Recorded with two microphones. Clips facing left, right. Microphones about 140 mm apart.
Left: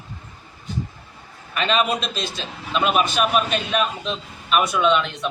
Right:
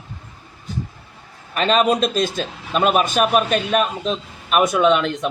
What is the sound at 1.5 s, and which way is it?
A man's voice, 40° right (ahead or behind).